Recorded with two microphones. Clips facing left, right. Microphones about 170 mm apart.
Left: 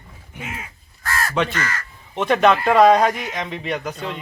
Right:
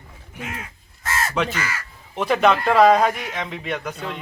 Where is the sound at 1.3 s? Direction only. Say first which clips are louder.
Left 2 dB; 5° right (ahead or behind).